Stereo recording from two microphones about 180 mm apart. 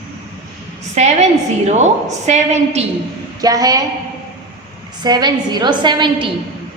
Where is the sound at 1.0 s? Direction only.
40° right (ahead or behind).